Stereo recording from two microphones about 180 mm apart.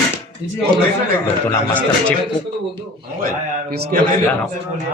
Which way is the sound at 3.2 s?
60° right (ahead or behind).